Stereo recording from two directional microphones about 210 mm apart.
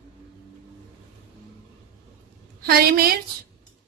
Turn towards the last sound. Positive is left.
turn(degrees=-45)  # may be behind; listen again after turning